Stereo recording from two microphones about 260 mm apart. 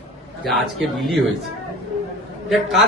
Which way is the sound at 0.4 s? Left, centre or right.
Centre.